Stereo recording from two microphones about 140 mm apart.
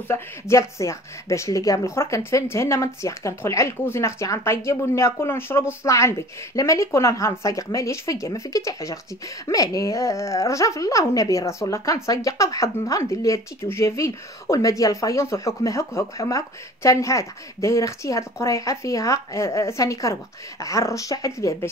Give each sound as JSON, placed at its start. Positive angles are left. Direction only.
{"t": 0.1, "sound": "a woman's voice", "side_deg": 20}